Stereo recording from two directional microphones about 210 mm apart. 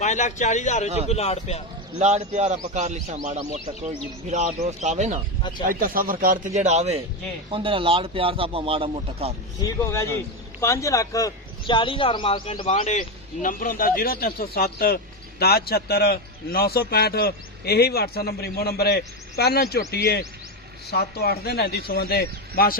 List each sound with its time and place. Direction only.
0.0 s a man's voice: 35° left (ahead or behind)
2.0 s a man's voice: 30° right (ahead or behind)
9.6 s speech: 15° left (ahead or behind); by 22.8 s 45° left (ahead or behind)